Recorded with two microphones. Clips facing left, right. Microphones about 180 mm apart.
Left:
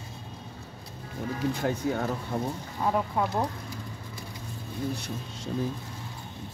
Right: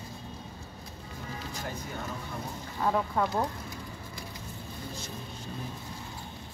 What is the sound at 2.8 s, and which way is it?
Speech, 10° left (ahead or behind).